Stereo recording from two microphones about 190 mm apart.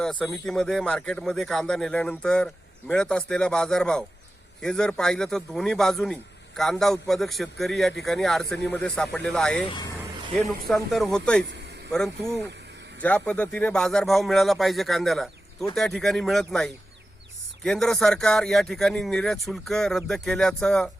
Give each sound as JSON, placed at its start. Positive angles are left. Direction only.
{"t": 0.0, "sound": "speech", "side_deg": 5}
{"t": 9.6, "sound": "speech", "side_deg": 20}
{"t": 10.9, "sound": "speech", "side_deg": 0}
{"t": 13.0, "sound": "speech", "side_deg": 5}